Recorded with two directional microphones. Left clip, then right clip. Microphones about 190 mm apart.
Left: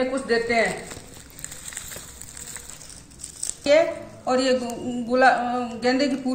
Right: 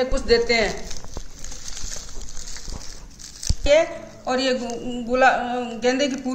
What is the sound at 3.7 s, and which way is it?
A man's voice, 30° right (ahead or behind).